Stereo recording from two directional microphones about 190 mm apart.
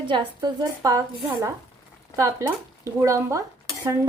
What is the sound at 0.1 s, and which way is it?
Speech, 25° right (ahead or behind).